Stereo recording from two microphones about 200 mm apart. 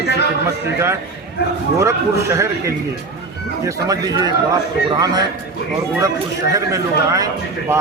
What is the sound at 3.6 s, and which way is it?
A man's voice, 20° right (ahead or behind).